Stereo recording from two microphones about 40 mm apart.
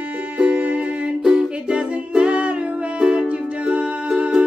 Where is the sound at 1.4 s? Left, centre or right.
Right.